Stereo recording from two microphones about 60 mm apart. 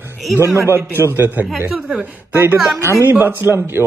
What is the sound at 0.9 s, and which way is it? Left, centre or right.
A man's voice, right.